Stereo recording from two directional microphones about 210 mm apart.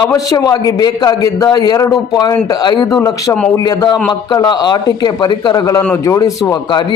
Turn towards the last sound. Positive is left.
turn(degrees=20)  # may be behind; listen again after turning